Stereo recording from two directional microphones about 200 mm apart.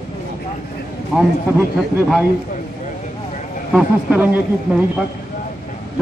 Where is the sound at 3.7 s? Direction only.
5° right (ahead or behind).